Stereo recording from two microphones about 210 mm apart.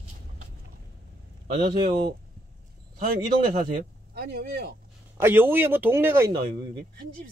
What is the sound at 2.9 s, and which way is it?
Speech, 40° right (ahead or behind).